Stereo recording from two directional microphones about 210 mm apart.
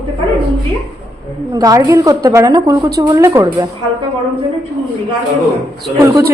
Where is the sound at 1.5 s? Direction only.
15° right (ahead or behind).